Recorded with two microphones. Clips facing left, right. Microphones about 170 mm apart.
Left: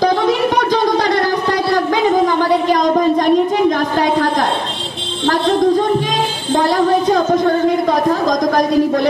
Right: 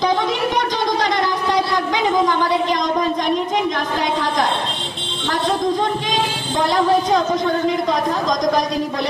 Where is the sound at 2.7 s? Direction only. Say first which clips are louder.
Left 6 dB; 55° left (ahead or behind).